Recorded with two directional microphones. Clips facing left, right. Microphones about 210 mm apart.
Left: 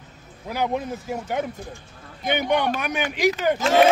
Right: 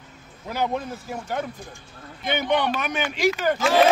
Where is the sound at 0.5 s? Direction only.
10° left (ahead or behind).